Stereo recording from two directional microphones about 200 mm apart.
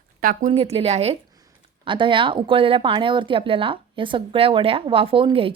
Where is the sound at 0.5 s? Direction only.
30° right (ahead or behind).